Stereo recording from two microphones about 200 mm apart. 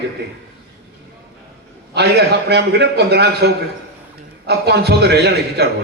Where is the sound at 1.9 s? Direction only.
55° right (ahead or behind).